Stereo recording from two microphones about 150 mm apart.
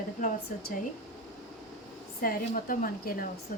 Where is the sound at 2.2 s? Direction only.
70° left (ahead or behind).